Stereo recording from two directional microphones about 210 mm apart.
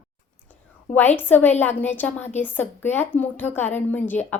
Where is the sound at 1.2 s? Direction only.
10° left (ahead or behind).